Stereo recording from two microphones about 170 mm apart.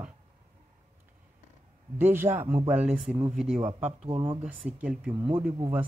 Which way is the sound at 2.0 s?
15° right (ahead or behind).